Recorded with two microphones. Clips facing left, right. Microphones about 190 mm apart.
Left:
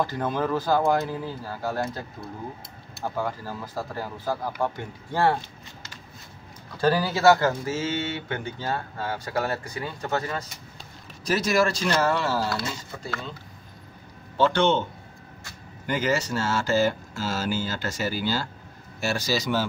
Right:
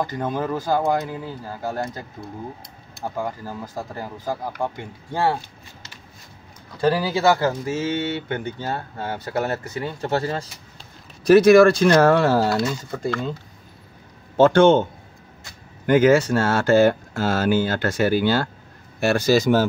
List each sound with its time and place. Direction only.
0.0 s speech: 15° right (ahead or behind)
3.0 s speech: 15° right (ahead or behind)
6.8 s speech: 10° right (ahead or behind); by 10.5 s 30° right (ahead or behind)
11.2 s speech: 60° right (ahead or behind)
14.3 s a man's voice: 50° right (ahead or behind)
15.9 s a man's voice: 55° right (ahead or behind)